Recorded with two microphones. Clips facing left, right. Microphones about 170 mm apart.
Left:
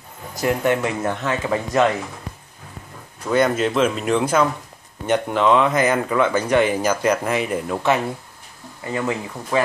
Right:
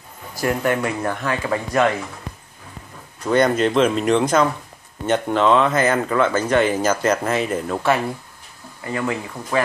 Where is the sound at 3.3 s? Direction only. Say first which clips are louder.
Right 1 dB; 5° left (ahead or behind).